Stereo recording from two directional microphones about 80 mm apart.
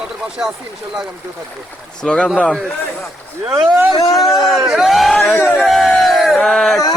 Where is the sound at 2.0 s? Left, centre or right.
Centre.